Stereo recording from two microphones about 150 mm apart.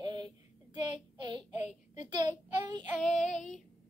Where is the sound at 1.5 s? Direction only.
50° left (ahead or behind).